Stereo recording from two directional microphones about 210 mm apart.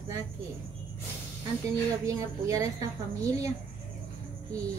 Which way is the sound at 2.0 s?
15° right (ahead or behind).